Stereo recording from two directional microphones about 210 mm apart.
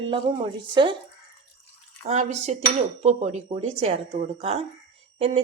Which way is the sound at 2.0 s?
35° right (ahead or behind).